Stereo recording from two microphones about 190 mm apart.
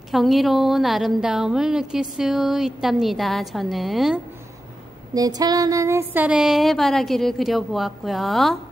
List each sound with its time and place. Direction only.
0.1 s a woman's voice: centre (ahead or behind)
5.1 s a woman's voice: 20° right (ahead or behind); by 8.5 s centre (ahead or behind)